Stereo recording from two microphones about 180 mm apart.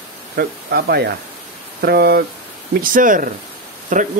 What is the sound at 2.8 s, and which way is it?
Speech, 50° right (ahead or behind).